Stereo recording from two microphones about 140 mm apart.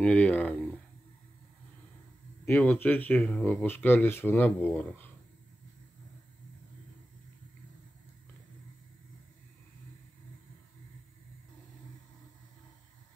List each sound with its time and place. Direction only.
0.0 s speech: 10° left (ahead or behind)
2.4 s speech: 15° left (ahead or behind)